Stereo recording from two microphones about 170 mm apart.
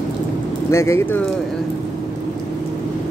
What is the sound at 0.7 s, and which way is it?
Speech, 15° left (ahead or behind).